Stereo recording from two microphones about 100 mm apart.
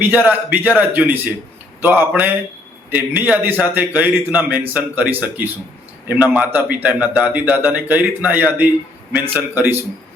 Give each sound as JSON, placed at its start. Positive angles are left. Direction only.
{"t": 0.0, "sound": "a man's voice", "side_deg": -20}